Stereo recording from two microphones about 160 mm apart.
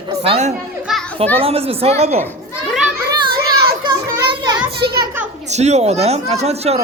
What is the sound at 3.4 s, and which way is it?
Children playing, 25° right (ahead or behind).